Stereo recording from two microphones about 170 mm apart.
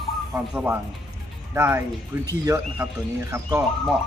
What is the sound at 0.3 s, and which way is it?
Speech, 10° right (ahead or behind).